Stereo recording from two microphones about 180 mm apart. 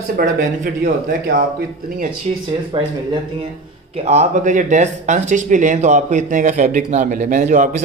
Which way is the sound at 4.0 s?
40° right (ahead or behind).